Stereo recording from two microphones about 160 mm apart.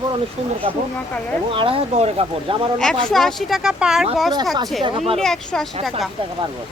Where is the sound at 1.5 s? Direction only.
35° right (ahead or behind).